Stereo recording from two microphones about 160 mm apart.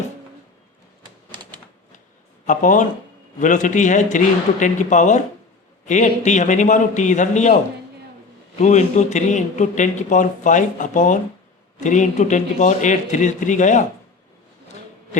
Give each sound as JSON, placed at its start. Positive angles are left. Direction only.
{"t": 2.5, "sound": "speech", "side_deg": 55}
{"t": 8.5, "sound": "speech", "side_deg": 45}